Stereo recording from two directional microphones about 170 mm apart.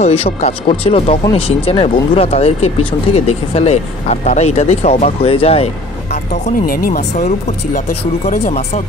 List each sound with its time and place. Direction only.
0.0 s speech: 35° left (ahead or behind)
6.6 s speech: 55° left (ahead or behind)